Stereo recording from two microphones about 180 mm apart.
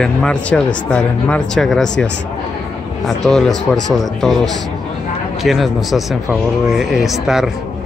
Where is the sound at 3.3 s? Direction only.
Centre (ahead or behind).